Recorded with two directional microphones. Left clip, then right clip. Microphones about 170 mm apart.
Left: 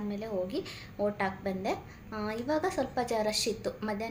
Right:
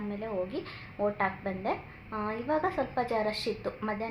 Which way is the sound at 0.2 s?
15° left (ahead or behind).